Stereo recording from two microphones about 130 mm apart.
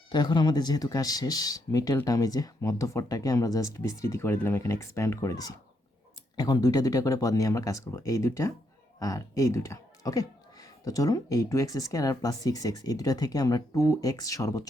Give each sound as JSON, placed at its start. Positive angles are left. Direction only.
{"t": 0.1, "sound": "speech", "side_deg": 35}